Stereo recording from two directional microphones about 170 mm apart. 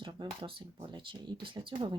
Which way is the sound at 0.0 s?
25° right (ahead or behind).